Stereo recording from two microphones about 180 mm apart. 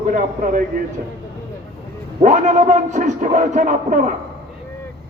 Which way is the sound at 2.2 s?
40° right (ahead or behind).